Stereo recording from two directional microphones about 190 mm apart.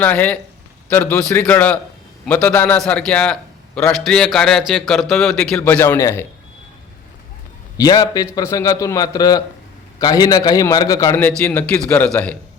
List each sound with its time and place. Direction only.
0.0 s a man's voice: 10° left (ahead or behind)
7.8 s a man's voice: 20° left (ahead or behind)